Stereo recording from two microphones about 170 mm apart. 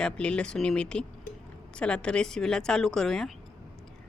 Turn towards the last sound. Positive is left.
turn(degrees=0)  # may be behind; listen again after turning